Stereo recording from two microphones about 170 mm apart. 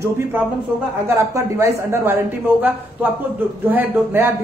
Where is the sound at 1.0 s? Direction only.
15° right (ahead or behind).